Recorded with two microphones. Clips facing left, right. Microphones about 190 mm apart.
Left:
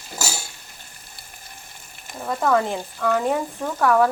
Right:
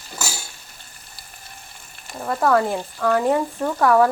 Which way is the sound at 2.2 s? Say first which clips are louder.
Right 2 dB; centre (ahead or behind).